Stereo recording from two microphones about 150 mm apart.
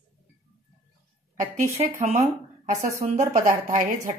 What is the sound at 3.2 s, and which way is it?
Speech, 60° right (ahead or behind).